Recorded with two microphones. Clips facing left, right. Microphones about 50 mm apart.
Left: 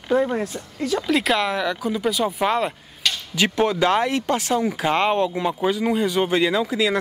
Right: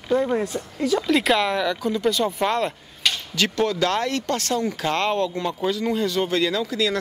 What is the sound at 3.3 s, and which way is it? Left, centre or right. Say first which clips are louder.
Speech: left 3 dB; left.